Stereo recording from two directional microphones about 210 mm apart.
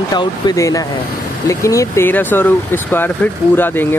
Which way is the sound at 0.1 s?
20° left (ahead or behind).